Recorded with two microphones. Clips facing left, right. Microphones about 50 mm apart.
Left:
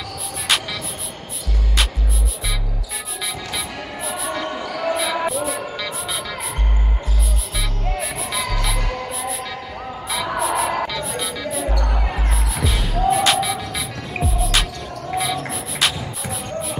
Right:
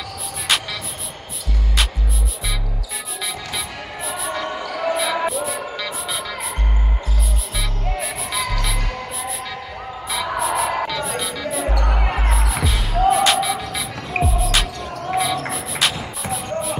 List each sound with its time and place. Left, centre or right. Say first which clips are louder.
0.5 s music: even; centre
3.5 s basketball bounce: left 1 dB; centre
8.0 s music: right 1 dB; centre
11.8 s music: right 2 dB; right
12.3 s music: right 2 dB; centre